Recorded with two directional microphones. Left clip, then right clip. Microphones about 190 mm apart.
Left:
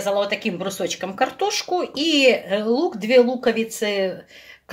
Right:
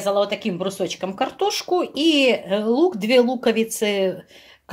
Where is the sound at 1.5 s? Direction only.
40° right (ahead or behind).